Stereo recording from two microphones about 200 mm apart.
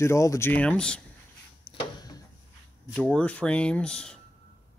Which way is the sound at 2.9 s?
5° left (ahead or behind).